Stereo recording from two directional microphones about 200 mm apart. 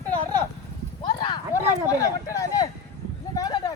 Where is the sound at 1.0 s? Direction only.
20° left (ahead or behind).